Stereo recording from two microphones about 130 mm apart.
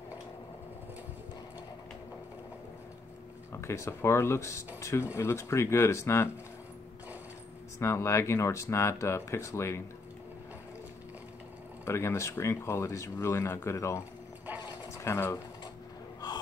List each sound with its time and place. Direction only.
3.6 s speech: 20° left (ahead or behind)
7.8 s speech: 20° left (ahead or behind)
11.8 s speech: 20° left (ahead or behind)
14.6 s sewing machine: 30° left (ahead or behind)
15.0 s speech: 20° left (ahead or behind)
16.2 s gasp: 30° left (ahead or behind)